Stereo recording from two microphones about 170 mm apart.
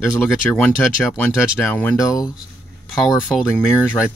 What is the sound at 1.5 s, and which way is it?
Speech, 15° left (ahead or behind).